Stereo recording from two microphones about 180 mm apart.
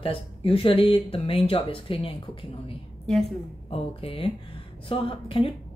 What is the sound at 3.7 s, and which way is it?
Speech, 30° left (ahead or behind).